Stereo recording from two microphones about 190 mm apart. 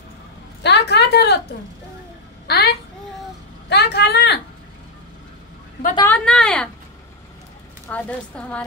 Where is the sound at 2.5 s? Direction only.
55° left (ahead or behind).